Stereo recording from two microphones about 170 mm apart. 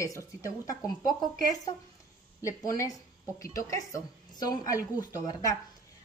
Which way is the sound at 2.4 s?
20° left (ahead or behind).